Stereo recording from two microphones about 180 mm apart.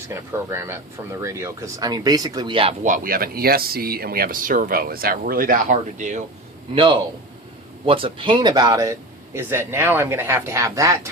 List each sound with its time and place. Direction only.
0.1 s speech: 15° right (ahead or behind)
2.8 s speech: 50° right (ahead or behind)
6.7 s speech: 25° right (ahead or behind)